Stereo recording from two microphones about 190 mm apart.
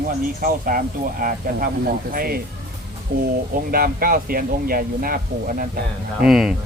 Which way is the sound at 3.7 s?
50° right (ahead or behind).